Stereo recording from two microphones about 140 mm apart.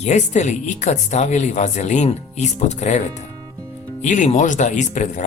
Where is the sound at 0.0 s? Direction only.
55° left (ahead or behind).